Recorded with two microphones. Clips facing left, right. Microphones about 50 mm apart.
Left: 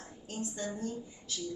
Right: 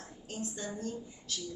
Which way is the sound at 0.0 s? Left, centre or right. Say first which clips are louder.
Left 1 dB; left.